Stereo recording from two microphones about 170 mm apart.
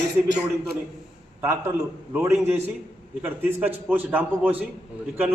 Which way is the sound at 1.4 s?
15° right (ahead or behind).